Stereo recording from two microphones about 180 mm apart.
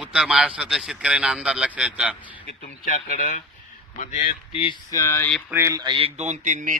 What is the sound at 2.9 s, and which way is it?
Speech, 45° left (ahead or behind).